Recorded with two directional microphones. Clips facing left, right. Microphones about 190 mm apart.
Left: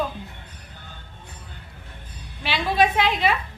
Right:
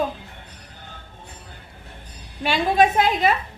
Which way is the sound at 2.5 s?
45° right (ahead or behind).